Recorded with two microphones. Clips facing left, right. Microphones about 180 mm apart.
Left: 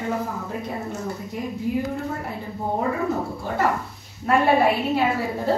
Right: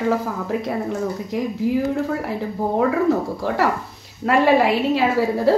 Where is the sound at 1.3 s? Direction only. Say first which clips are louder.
Right 7 dB; 90° right.